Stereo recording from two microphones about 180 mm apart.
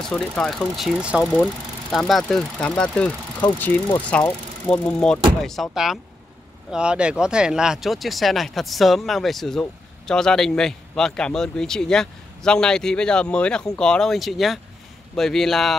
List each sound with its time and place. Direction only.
0.0 s speech: 5° left (ahead or behind)